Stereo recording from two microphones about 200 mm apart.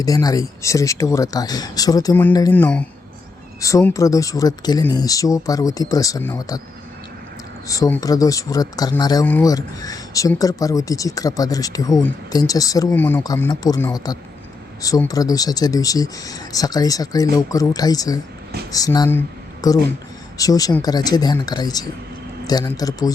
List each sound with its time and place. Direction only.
0.0 s speech: 20° left (ahead or behind)
7.7 s speech: 15° left (ahead or behind)